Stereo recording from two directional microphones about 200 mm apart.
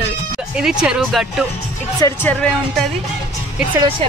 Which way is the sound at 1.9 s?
15° left (ahead or behind).